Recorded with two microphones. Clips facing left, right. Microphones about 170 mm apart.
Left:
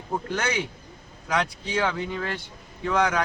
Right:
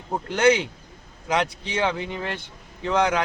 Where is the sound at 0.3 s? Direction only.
20° right (ahead or behind).